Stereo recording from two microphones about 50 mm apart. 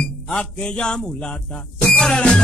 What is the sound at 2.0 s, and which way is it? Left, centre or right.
Music, left.